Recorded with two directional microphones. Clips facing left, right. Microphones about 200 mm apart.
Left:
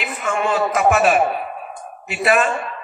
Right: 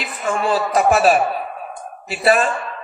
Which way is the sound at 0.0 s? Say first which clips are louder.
Even; 35° right (ahead or behind).